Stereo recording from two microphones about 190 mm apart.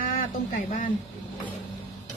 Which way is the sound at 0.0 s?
45° left (ahead or behind).